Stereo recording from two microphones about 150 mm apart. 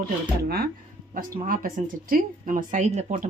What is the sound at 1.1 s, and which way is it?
Speech, 65° right (ahead or behind).